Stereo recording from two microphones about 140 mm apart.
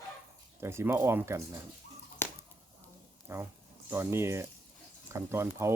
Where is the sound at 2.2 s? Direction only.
15° left (ahead or behind).